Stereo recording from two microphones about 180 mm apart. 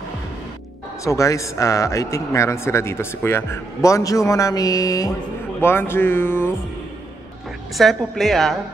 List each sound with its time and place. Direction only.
1.0 s speech: 15° left (ahead or behind)
7.7 s a woman's voice: centre (ahead or behind)